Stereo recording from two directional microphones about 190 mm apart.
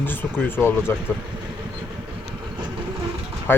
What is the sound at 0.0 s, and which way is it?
Speech, 10° left (ahead or behind).